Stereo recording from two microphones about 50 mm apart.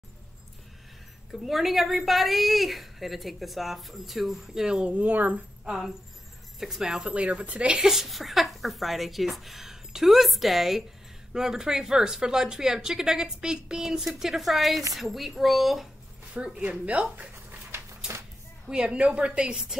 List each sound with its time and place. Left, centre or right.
1.3 s a woman's voice: centre
4.9 s speech: right
5.7 s a woman's voice: centre
7.8 s a woman's voice: centre
16.6 s a woman's voice: right
17.6 s a sound: right
18.7 s a woman's voice: centre